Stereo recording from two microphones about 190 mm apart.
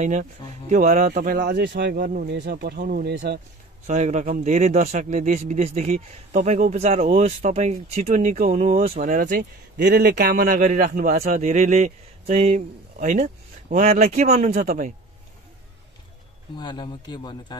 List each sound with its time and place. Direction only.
0.0 s speech: 40° right (ahead or behind); by 3.3 s 60° right (ahead or behind)
3.8 s speech: 35° right (ahead or behind)
9.4 s speech: 60° right (ahead or behind); by 14.9 s 40° right (ahead or behind)
16.5 s speech: 25° left (ahead or behind)